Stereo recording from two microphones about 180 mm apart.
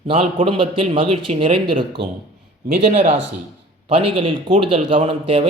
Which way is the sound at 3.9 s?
30° right (ahead or behind).